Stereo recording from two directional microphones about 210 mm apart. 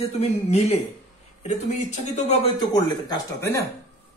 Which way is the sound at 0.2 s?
30° left (ahead or behind).